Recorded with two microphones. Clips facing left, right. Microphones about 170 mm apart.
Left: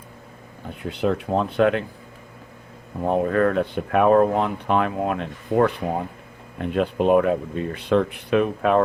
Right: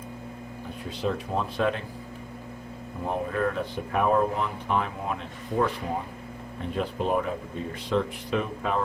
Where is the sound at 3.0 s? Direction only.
65° left (ahead or behind).